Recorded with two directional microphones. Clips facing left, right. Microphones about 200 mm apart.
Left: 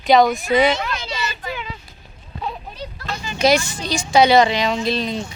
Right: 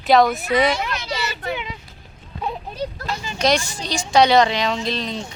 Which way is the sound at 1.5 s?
20° right (ahead or behind).